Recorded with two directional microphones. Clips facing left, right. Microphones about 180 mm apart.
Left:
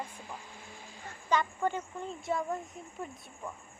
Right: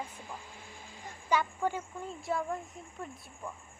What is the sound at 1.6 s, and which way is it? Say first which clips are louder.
Speech: left 1 dB; 5° right (ahead or behind).